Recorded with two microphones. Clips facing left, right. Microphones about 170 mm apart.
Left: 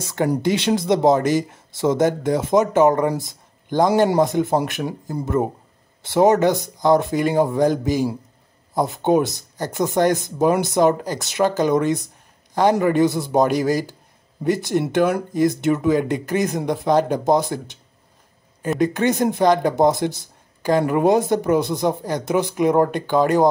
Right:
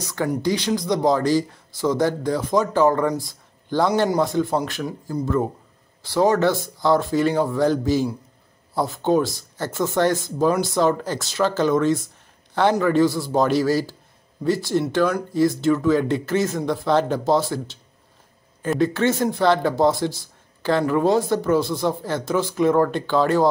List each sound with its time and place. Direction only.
0.0 s speech: 25° left (ahead or behind)
18.8 s speech: 15° left (ahead or behind)